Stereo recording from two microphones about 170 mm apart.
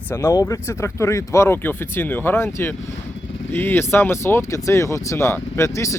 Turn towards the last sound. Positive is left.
turn(degrees=15)  # may be behind; listen again after turning